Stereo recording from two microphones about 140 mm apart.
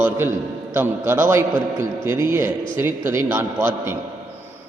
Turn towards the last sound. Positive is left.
turn(degrees=-15)  # may be behind; listen again after turning